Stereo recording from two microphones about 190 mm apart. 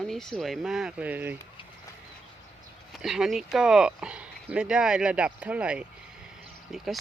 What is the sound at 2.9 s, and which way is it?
Speech, centre (ahead or behind).